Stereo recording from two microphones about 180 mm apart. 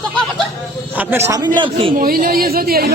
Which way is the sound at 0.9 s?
10° right (ahead or behind).